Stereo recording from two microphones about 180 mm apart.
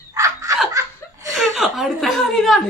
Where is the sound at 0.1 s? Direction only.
20° right (ahead or behind).